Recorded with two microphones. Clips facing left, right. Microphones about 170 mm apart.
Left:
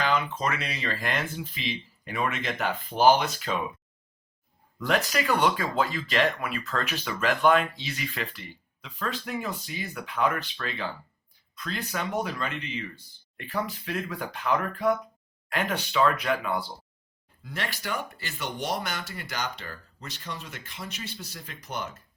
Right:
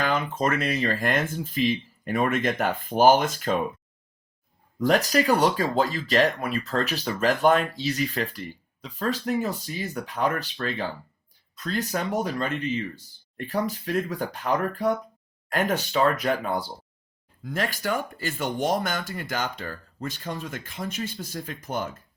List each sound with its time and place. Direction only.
0.0 s speech: 50° right (ahead or behind)
4.8 s speech: 40° right (ahead or behind)